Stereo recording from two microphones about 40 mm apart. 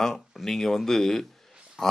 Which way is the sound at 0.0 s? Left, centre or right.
Centre.